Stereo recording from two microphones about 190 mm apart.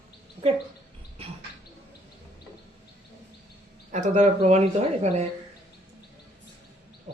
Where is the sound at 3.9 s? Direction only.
40° right (ahead or behind).